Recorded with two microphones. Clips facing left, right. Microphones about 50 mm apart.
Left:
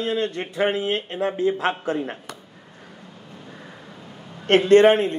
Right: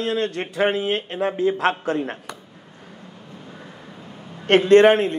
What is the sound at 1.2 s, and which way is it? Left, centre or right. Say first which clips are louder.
A man's voice: right 2 dB; centre.